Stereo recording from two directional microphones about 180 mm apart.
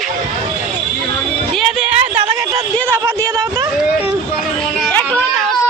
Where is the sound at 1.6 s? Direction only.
5° right (ahead or behind).